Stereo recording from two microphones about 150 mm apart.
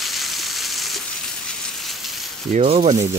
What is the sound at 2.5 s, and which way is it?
Speech, 45° right (ahead or behind).